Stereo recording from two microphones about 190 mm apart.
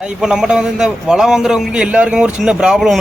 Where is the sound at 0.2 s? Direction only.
5° right (ahead or behind).